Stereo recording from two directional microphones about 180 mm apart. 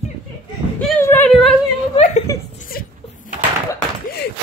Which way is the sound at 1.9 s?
40° left (ahead or behind).